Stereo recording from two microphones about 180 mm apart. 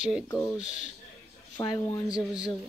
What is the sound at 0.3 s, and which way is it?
Speech, 10° left (ahead or behind).